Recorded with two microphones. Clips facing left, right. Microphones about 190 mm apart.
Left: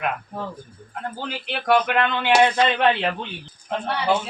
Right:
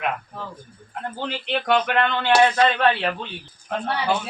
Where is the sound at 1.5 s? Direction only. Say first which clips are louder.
Left 1 dB; 5° left (ahead or behind).